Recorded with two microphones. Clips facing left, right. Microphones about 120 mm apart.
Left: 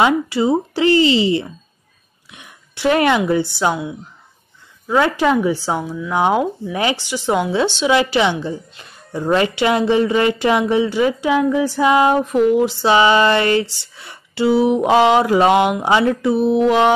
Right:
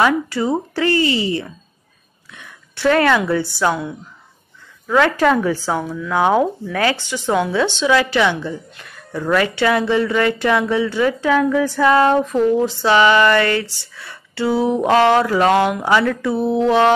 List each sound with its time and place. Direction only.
0.0 s speech: 15° left (ahead or behind)
4.8 s a woman's voice: 15° left (ahead or behind)